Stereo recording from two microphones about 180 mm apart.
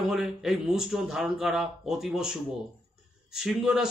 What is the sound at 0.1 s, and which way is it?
A man's voice, centre (ahead or behind).